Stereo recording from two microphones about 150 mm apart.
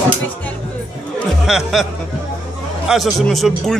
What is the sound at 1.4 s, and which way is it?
Speech, 5° right (ahead or behind).